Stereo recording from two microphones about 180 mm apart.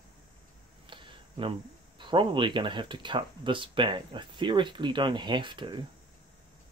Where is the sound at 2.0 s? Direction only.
25° right (ahead or behind).